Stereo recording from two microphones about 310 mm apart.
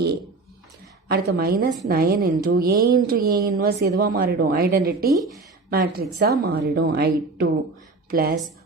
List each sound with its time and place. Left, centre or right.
1.0 s a woman's voice: right